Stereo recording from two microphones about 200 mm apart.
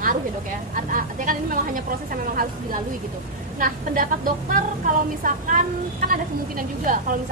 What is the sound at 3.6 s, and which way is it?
A woman's voice, 45° right (ahead or behind).